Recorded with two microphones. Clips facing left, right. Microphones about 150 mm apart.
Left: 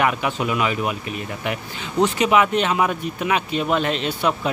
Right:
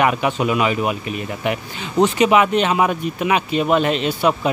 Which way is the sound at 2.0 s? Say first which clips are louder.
Right 3 dB; 20° right (ahead or behind).